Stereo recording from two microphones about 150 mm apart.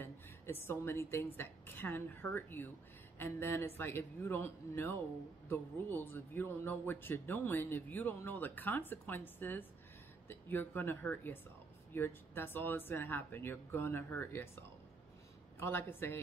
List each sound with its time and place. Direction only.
0.0 s a woman's voice: 15° left (ahead or behind)
15.6 s a man's voice: 15° left (ahead or behind)